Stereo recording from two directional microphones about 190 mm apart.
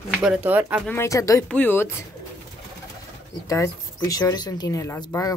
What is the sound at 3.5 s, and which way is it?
Speech, 15° left (ahead or behind).